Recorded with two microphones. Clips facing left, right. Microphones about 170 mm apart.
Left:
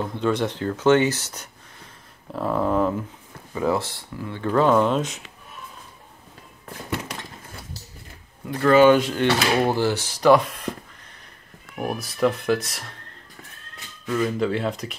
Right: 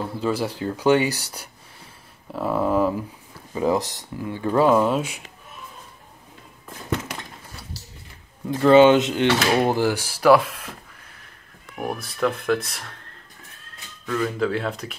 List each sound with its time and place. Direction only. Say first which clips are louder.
0.1 s speech: left 2 dB; 5° right (ahead or behind)
3.5 s speech: right 2 dB; 15° right (ahead or behind)
8.5 s speech: right 2 dB; 25° right (ahead or behind); by 12.8 s centre (ahead or behind)
14.0 s speech: left 1 dB; 10° left (ahead or behind)
14.4 s speech: even; centre (ahead or behind)